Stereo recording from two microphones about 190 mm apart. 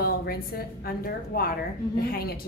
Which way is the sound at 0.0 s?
55° left (ahead or behind).